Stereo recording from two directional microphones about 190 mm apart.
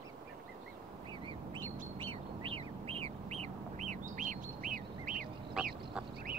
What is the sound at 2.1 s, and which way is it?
Bird, 30° right (ahead or behind).